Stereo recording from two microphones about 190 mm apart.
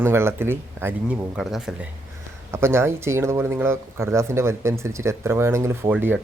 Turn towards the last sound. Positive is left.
turn(degrees=-10)  # may be behind; listen again after turning